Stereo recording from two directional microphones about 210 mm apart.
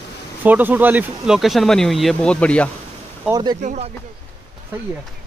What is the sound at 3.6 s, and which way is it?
Speech, 35° right (ahead or behind).